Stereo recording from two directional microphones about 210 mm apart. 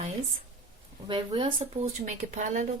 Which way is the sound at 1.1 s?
25° right (ahead or behind).